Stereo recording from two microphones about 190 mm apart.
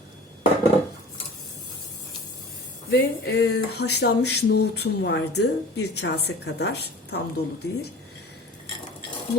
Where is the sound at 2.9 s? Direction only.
60° left (ahead or behind).